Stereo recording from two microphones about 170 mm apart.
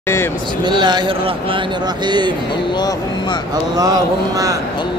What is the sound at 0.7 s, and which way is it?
Speech, 25° right (ahead or behind).